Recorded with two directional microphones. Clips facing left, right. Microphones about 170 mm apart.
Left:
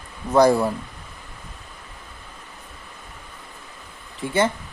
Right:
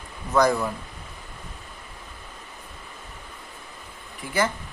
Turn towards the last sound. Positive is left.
turn(degrees=25)  # may be behind; listen again after turning